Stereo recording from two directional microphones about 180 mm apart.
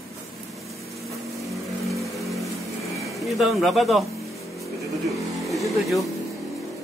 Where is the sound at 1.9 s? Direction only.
Centre (ahead or behind).